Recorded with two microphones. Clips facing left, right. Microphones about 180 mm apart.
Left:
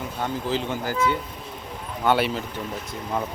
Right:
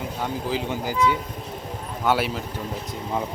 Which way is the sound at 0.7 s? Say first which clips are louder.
Right 5 dB; 15° right (ahead or behind).